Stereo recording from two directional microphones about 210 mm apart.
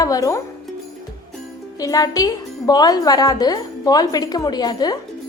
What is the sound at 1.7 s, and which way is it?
Speech, 15° left (ahead or behind).